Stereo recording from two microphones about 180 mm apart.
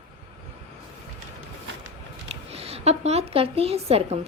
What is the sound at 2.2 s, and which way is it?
Speech, 35° right (ahead or behind).